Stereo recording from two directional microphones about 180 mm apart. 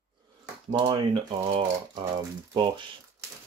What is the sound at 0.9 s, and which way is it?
Speech, 25° right (ahead or behind).